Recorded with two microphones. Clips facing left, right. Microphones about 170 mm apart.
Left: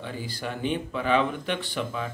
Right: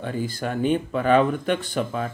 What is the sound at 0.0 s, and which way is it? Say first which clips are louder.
Speech: right 6 dB; 45° right (ahead or behind).